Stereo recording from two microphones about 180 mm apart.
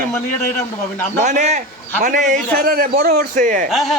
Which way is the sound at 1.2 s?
40° right (ahead or behind).